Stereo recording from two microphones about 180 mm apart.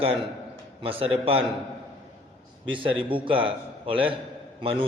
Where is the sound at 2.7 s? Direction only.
30° right (ahead or behind).